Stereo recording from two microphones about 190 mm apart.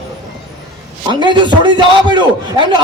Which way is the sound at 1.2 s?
25° right (ahead or behind).